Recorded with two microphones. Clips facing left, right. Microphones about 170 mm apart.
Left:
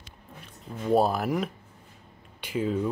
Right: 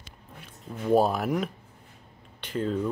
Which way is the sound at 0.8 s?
Centre (ahead or behind).